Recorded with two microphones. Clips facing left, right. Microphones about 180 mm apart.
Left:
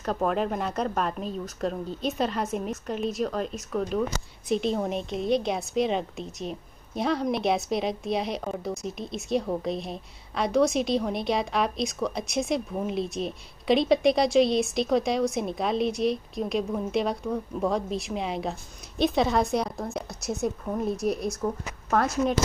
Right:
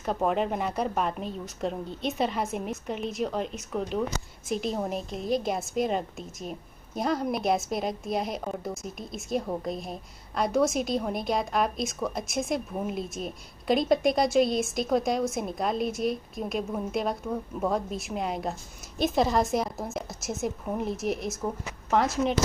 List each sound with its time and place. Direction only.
0.0 s a woman's voice: 15° right (ahead or behind)
4.5 s a woman's voice: centre (ahead or behind)
20.6 s a woman's voice: 15° right (ahead or behind)